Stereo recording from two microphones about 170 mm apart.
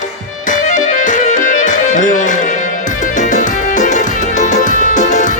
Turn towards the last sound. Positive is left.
turn(degrees=45)  # may be behind; listen again after turning